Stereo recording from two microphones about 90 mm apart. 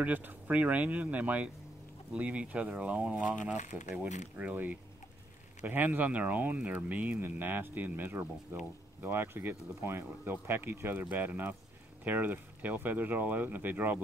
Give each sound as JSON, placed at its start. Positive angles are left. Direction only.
{"t": 0.0, "sound": "speech", "side_deg": -20}